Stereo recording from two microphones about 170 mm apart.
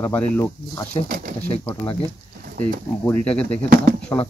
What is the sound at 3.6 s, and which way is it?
Speech, 60° right (ahead or behind).